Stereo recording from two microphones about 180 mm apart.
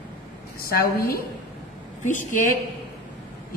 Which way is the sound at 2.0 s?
45° left (ahead or behind).